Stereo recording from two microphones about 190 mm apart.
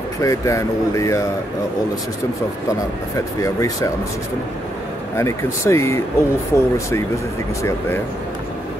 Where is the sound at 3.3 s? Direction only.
15° left (ahead or behind).